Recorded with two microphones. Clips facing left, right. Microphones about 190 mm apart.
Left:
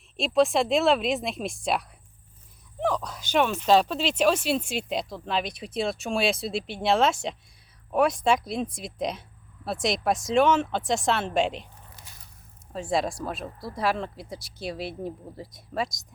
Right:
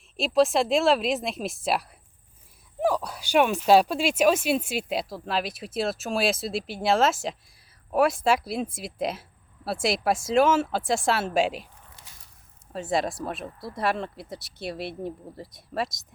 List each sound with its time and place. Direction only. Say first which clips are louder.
0.2 s speech: right 1 dB; centre (ahead or behind)
12.0 s a sound: left 2 dB; 30° right (ahead or behind)
12.7 s speech: even; centre (ahead or behind)